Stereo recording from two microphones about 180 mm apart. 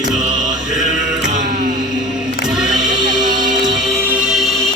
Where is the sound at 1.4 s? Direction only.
55° right (ahead or behind).